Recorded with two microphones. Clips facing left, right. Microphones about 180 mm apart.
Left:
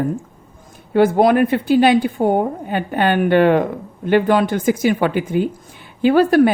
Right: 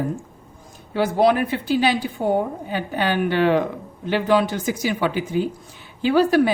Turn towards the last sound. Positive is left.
turn(degrees=50)  # may be behind; listen again after turning